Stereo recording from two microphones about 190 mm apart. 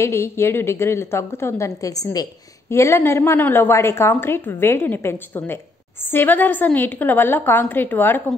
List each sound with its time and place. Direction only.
0.0 s a woman's voice: 15° left (ahead or behind)